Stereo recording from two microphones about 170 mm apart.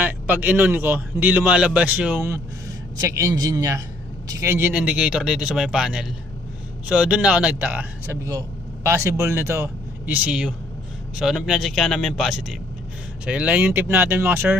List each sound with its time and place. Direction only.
0.0 s a man's voice: 10° right (ahead or behind)